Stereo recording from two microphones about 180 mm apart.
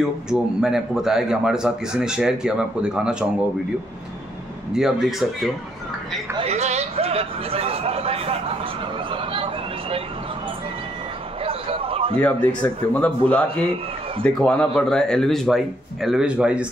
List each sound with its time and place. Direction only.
0.0 s speech: 5° right (ahead or behind)
4.7 s speech: 5° right (ahead or behind)
6.3 s speech: 35° right (ahead or behind)
9.1 s a sound: 30° right (ahead or behind)
11.4 s basketball bounce: 30° right (ahead or behind)
12.2 s speech: 10° left (ahead or behind)